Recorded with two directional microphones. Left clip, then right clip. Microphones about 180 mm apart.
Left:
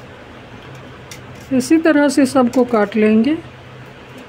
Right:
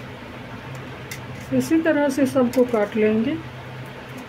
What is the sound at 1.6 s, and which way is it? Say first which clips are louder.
Speech: left 6 dB; 40° left (ahead or behind).